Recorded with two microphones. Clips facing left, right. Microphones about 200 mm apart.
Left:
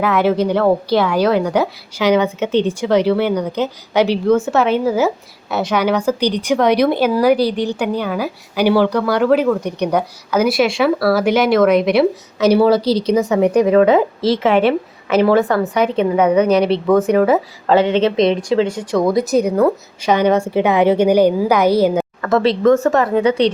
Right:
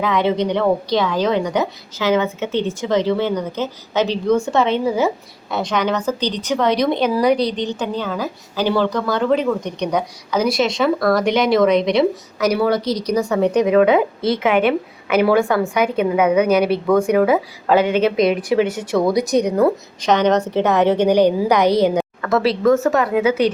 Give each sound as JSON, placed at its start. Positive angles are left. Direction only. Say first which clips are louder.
{"t": 0.0, "sound": "a woman's voice", "louder": "left 3 dB", "side_deg": 5}
{"t": 12.4, "sound": "speech", "louder": "left 5 dB", "side_deg": 30}
{"t": 14.4, "sound": "a woman's voice", "louder": "left 2 dB", "side_deg": 30}
{"t": 15.2, "sound": "a woman's voice", "louder": "left 2 dB", "side_deg": 0}
{"t": 17.7, "sound": "speech", "louder": "left 2 dB", "side_deg": 25}
{"t": 18.5, "sound": "speech", "louder": "left 1 dB", "side_deg": -20}
{"t": 19.0, "sound": "a woman's voice", "louder": "left 2 dB", "side_deg": 0}